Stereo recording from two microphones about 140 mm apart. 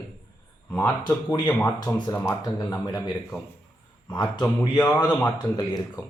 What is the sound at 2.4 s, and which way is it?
Speech, 25° left (ahead or behind).